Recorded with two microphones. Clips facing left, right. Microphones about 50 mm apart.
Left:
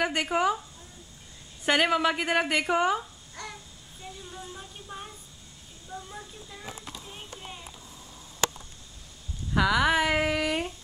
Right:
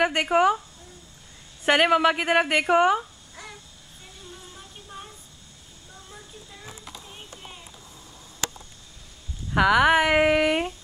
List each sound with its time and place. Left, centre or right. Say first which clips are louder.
0.0 s speech: right 5 dB; right
1.7 s speech: right 5 dB; centre
2.7 s speech: right 6 dB; right
3.0 s babbling: right 1 dB; centre
4.6 s vehicle: left 1 dB; centre
6.0 s a sound: left 2 dB; centre
9.6 s speech: right 5 dB; right